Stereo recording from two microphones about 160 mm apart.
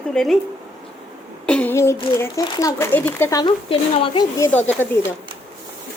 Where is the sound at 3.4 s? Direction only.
35° left (ahead or behind).